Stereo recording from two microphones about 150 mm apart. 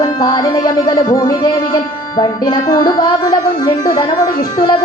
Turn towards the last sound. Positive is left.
turn(degrees=30)  # may be behind; listen again after turning